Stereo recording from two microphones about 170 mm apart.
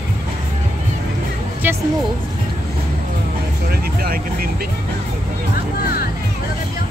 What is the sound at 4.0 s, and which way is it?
Speech, 60° right (ahead or behind).